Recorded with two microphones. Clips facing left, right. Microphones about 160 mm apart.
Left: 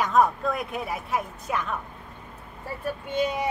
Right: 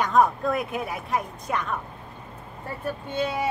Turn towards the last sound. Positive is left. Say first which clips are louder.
# left 1 dB
turn(degrees=15)  # may be behind; listen again after turning